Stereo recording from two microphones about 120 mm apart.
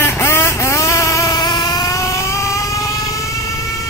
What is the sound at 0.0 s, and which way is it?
Vehicle, 20° left (ahead or behind).